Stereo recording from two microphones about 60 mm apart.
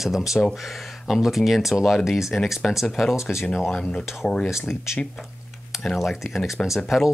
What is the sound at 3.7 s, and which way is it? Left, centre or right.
Speech, centre.